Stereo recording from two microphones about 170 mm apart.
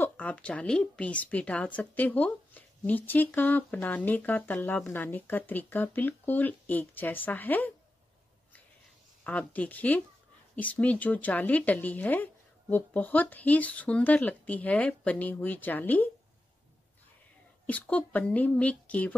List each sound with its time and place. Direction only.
0.0 s a woman's voice: 10° left (ahead or behind)
9.2 s a woman's voice: 10° left (ahead or behind)
17.6 s a woman's voice: 10° left (ahead or behind)